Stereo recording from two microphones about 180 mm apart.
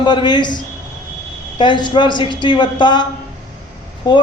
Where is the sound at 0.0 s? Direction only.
25° left (ahead or behind).